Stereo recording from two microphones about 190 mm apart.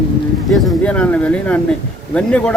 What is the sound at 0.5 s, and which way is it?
A man's voice, 5° left (ahead or behind).